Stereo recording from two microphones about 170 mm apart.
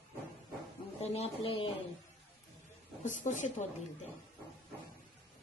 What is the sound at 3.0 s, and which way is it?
Speech, 45° left (ahead or behind).